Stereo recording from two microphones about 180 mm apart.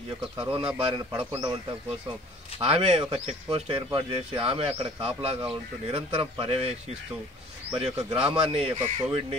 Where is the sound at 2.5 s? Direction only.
30° right (ahead or behind).